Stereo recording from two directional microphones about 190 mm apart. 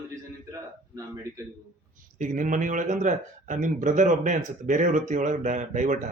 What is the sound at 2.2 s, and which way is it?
Speech, 40° right (ahead or behind).